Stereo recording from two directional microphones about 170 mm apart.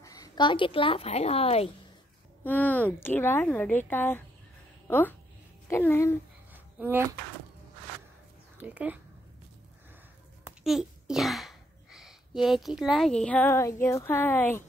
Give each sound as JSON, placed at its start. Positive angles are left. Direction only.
{"t": 0.0, "sound": "a woman's voice", "side_deg": 20}
{"t": 2.4, "sound": "a woman's voice", "side_deg": 10}
{"t": 6.8, "sound": "speech", "side_deg": -15}
{"t": 8.5, "sound": "a child's voice", "side_deg": -10}
{"t": 10.4, "sound": "a sound", "side_deg": -5}
{"t": 12.4, "sound": "speech", "side_deg": 0}